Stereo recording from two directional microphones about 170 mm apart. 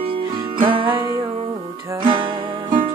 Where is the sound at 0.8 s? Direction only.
15° right (ahead or behind).